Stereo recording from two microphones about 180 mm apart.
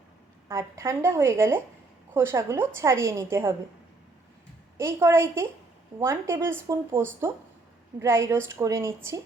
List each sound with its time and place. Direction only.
0.4 s a woman's voice: 15° right (ahead or behind)
4.8 s a woman's voice: 15° right (ahead or behind)